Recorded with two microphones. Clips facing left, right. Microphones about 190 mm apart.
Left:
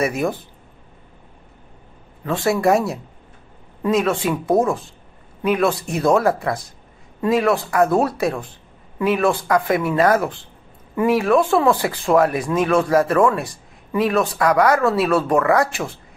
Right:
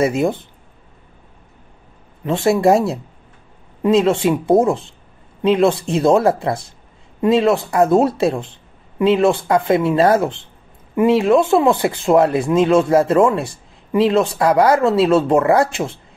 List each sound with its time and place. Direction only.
0.0 s speech: 25° right (ahead or behind)
2.2 s speech: 25° right (ahead or behind)